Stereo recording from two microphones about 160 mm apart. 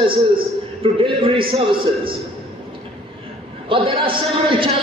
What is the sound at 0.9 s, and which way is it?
Speech, 35° right (ahead or behind).